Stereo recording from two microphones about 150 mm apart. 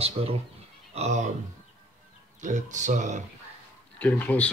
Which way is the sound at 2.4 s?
55° right (ahead or behind).